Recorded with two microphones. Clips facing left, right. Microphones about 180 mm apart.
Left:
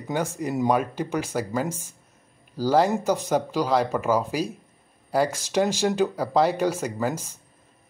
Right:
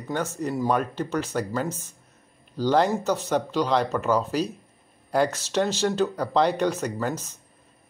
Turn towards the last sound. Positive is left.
turn(degrees=10)  # may be behind; listen again after turning